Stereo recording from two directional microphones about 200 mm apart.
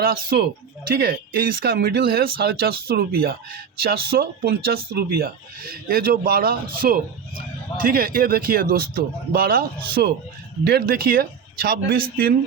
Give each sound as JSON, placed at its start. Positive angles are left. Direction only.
{"t": 0.0, "sound": "speech", "side_deg": -50}